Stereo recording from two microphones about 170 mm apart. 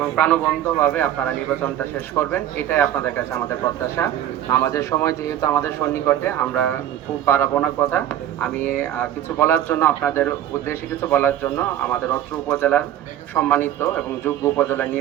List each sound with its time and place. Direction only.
0.2 s speech: 10° left (ahead or behind)
4.5 s speech: 15° left (ahead or behind)